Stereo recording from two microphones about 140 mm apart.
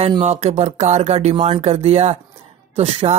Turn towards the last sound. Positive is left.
turn(degrees=-45)  # may be behind; listen again after turning